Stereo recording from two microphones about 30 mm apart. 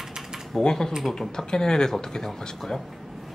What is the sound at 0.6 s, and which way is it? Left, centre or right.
Speech, left.